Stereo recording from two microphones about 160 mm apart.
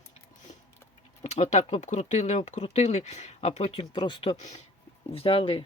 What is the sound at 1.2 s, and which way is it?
Speech, 45° left (ahead or behind).